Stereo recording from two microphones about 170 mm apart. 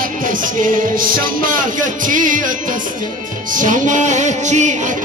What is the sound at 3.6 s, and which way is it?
Music, 50° right (ahead or behind).